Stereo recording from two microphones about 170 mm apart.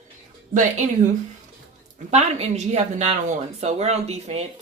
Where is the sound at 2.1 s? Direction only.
40° right (ahead or behind).